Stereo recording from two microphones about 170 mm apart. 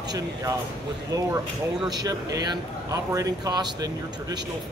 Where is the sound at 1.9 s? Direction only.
20° right (ahead or behind).